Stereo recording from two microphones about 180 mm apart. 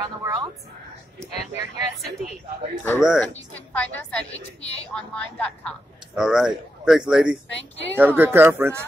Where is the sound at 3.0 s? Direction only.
5° right (ahead or behind).